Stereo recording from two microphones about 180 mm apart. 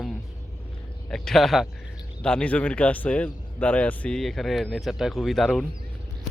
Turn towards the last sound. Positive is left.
turn(degrees=0)  # may be behind; listen again after turning